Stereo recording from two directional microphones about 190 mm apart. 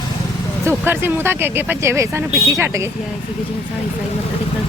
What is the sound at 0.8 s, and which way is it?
Speech, 10° right (ahead or behind).